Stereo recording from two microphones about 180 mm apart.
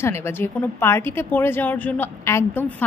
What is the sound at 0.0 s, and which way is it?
A woman's voice, 15° left (ahead or behind).